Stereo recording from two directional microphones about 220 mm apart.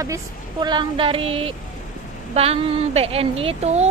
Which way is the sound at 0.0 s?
15° right (ahead or behind).